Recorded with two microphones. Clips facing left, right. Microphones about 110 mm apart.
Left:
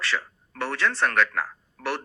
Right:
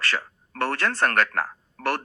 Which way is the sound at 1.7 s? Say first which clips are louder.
Right 3 dB; 50° right (ahead or behind).